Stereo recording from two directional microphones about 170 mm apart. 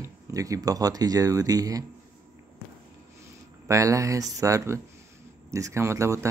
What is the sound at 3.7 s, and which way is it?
Speech, 20° right (ahead or behind).